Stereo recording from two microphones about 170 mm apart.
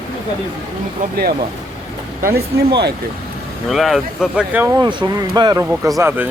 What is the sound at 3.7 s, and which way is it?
Speech, centre (ahead or behind).